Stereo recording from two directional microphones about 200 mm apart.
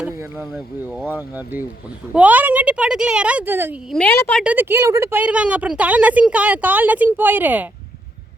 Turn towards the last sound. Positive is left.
turn(degrees=-10)  # may be behind; listen again after turning